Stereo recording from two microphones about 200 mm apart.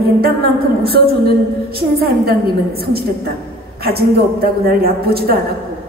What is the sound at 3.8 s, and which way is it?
A woman's voice, 50° right (ahead or behind).